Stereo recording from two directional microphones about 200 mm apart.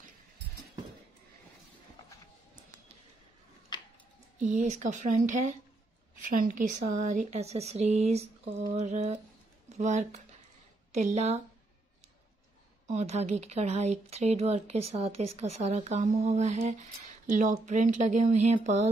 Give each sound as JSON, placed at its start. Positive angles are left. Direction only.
{"t": 3.7, "sound": "a sound", "side_deg": 20}
{"t": 4.4, "sound": "speech", "side_deg": -35}
{"t": 12.8, "sound": "speech", "side_deg": -35}